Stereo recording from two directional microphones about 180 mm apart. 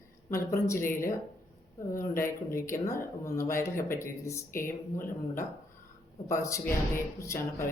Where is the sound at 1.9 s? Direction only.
15° left (ahead or behind).